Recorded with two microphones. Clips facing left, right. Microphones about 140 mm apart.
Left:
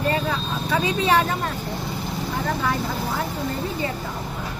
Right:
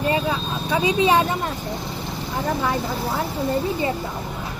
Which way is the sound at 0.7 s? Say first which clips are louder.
Right 3 dB; 15° right (ahead or behind).